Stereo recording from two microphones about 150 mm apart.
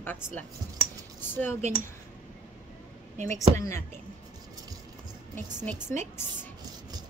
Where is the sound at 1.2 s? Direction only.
15° left (ahead or behind).